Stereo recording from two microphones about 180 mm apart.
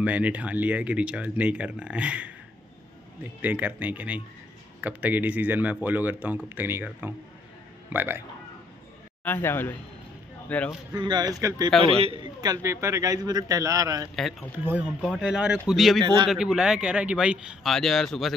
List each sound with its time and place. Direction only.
0.0 s speech: 10° right (ahead or behind)
3.4 s speech: 10° right (ahead or behind)
9.2 s a man's voice: 10° left (ahead or behind)
10.9 s speech: 25° right (ahead or behind)
11.8 s a man's voice: 30° right (ahead or behind)
12.4 s speech: 20° right (ahead or behind)
14.1 s speech: centre (ahead or behind)
14.6 s speech: 10° right (ahead or behind)
16.0 s speech: 25° right (ahead or behind)
16.3 s speech: 5° right (ahead or behind)